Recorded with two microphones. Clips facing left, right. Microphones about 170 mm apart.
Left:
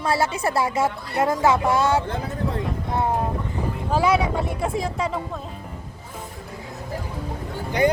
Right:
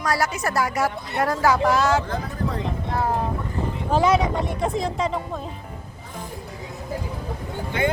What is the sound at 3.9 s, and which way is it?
Speech, 10° left (ahead or behind).